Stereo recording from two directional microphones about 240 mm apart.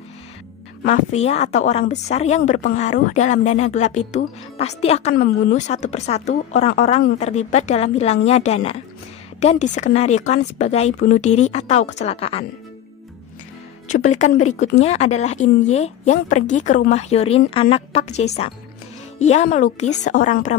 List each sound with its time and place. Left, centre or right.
0.8 s speech: left
14.5 s speech: left